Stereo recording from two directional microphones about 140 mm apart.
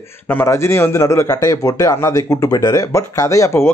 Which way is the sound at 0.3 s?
15° left (ahead or behind).